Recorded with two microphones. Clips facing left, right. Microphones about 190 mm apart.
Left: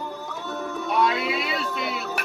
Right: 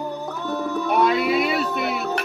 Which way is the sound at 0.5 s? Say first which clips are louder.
Right 4 dB; 65° right (ahead or behind).